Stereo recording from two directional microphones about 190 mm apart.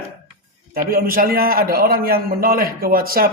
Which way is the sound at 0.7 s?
50° right (ahead or behind).